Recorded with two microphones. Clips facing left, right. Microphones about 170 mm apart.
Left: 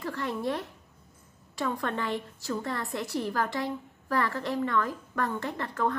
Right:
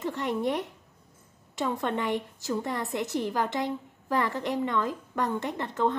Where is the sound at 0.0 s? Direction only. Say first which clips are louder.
Right 3 dB; 20° right (ahead or behind).